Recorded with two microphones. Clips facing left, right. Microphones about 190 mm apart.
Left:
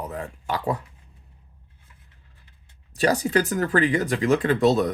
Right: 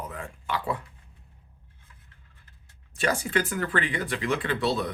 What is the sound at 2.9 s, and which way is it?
Speech, 40° left (ahead or behind).